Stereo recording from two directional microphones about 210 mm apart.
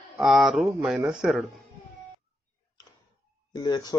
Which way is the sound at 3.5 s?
20° left (ahead or behind).